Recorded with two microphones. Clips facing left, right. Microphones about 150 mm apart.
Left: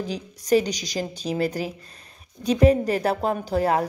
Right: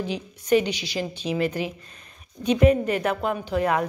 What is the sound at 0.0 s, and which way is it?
A woman's voice, 40° left (ahead or behind).